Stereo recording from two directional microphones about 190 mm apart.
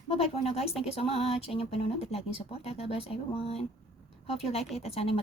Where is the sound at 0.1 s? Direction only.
30° left (ahead or behind).